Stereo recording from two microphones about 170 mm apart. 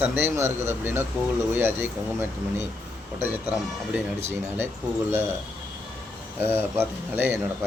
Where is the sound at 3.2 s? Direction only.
10° right (ahead or behind).